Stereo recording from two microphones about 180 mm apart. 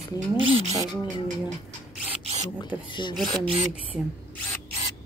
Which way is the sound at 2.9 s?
25° left (ahead or behind).